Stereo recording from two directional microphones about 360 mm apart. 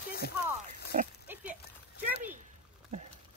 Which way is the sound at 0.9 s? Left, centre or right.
Right.